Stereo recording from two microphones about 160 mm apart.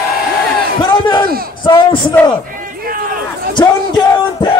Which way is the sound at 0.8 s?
30° left (ahead or behind).